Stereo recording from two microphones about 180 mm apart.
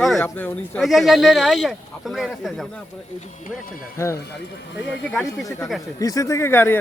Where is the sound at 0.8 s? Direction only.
Centre (ahead or behind).